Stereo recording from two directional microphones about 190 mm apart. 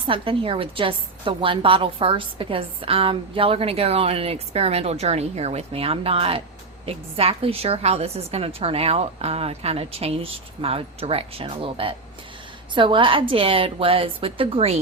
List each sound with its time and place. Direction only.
0.1 s a woman's voice: 30° right (ahead or behind)